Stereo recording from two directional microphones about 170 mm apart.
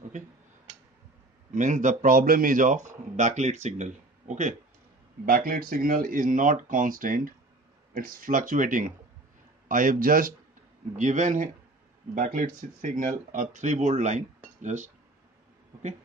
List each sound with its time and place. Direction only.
1.5 s speech: 45° right (ahead or behind)
5.2 s speech: 55° right (ahead or behind)